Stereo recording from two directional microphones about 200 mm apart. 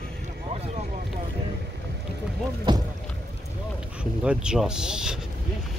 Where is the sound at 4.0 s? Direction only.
5° right (ahead or behind).